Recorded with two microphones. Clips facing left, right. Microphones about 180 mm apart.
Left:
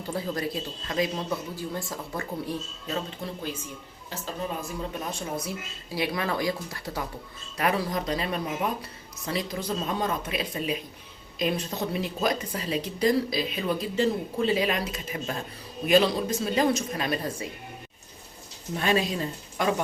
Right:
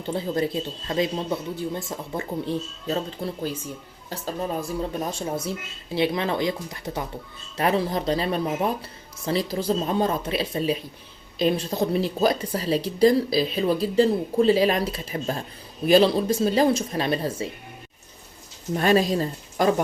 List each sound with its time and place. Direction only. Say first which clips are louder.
0.0 s speech: right 5 dB; 25° right (ahead or behind)
4.9 s speech: right 4 dB; 30° right (ahead or behind)
18.8 s speech: right 5 dB; 40° right (ahead or behind)